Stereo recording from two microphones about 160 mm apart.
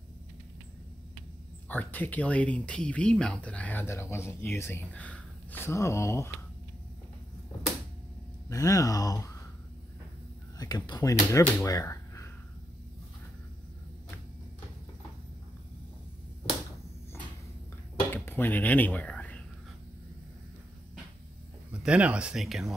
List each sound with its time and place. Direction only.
1.7 s speech: 10° left (ahead or behind)
8.5 s speech: 20° left (ahead or behind)
10.6 s speech: 25° left (ahead or behind)
18.1 s a sound: 15° left (ahead or behind)
21.8 s speech: 10° right (ahead or behind)